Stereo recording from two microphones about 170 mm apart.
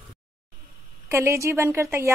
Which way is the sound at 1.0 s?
15° right (ahead or behind).